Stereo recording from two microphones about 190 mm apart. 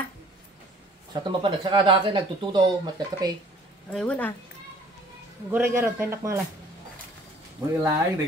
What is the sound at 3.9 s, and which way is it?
Speech, 5° left (ahead or behind).